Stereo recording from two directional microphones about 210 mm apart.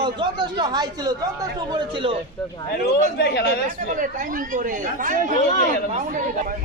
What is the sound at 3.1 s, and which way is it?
Speech, 55° left (ahead or behind).